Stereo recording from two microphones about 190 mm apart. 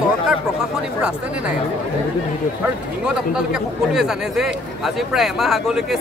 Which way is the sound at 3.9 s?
Centre (ahead or behind).